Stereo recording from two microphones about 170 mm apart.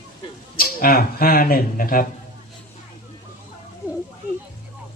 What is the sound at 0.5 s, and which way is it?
Speech, 60° left (ahead or behind).